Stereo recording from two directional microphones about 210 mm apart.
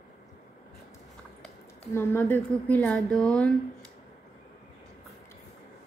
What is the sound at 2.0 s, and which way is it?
A woman's voice, 10° left (ahead or behind).